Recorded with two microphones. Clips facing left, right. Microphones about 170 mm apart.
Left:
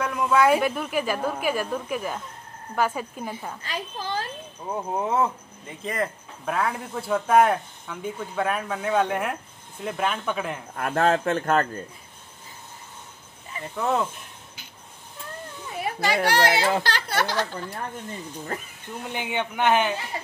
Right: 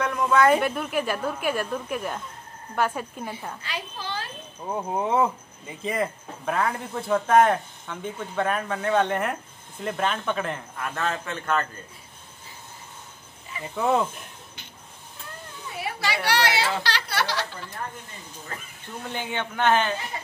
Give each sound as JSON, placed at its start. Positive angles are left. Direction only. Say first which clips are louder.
{"t": 0.0, "sound": "speech", "louder": "even", "side_deg": 5}
{"t": 3.6, "sound": "a child's voice", "louder": "left 4 dB", "side_deg": 45}
{"t": 4.6, "sound": "speech", "louder": "right 1 dB", "side_deg": 0}
{"t": 10.8, "sound": "a child's voice", "louder": "left 9 dB", "side_deg": 50}
{"t": 13.7, "sound": "speech", "louder": "right 2 dB", "side_deg": 0}
{"t": 15.8, "sound": "a child's voice", "louder": "left 5 dB", "side_deg": 45}
{"t": 19.0, "sound": "a man's voice", "louder": "left 2 dB", "side_deg": 15}